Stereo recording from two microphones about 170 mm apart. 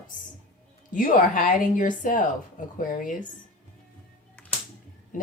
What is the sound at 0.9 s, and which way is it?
A woman's voice, 50° left (ahead or behind).